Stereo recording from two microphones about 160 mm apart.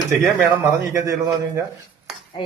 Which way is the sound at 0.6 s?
20° right (ahead or behind).